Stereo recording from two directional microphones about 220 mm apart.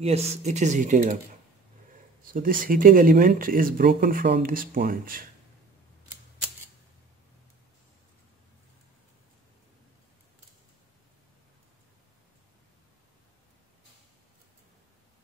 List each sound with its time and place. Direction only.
0.0 s speech: 30° right (ahead or behind)
2.3 s speech: 40° right (ahead or behind)